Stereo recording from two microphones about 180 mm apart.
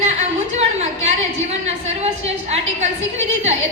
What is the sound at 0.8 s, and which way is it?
A woman's voice, 35° right (ahead or behind).